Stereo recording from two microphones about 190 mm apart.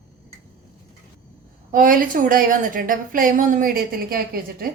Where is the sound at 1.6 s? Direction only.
45° right (ahead or behind).